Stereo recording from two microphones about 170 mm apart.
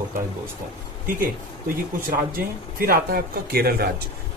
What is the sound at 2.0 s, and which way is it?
Speech, 60° right (ahead or behind).